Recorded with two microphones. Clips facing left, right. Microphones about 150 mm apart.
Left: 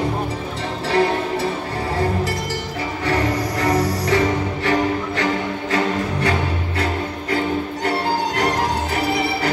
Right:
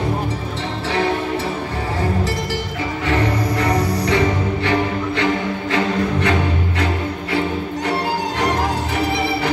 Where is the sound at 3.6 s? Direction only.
40° left (ahead or behind).